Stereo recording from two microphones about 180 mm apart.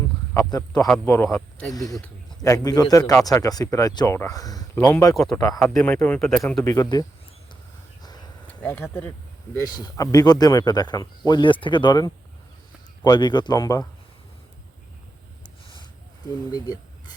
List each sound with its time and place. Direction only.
0.5 s speech: 20° left (ahead or behind)
5.1 s speech: centre (ahead or behind)
6.7 s speech: 20° left (ahead or behind)
8.6 s speech: 10° left (ahead or behind)
9.6 s speech: 20° left (ahead or behind)
16.5 s speech: 20° left (ahead or behind)